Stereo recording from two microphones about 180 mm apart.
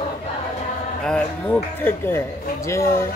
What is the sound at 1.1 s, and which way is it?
Speech, 5° left (ahead or behind).